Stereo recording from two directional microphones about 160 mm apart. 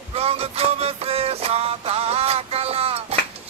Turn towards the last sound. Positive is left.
turn(degrees=-35)  # may be behind; listen again after turning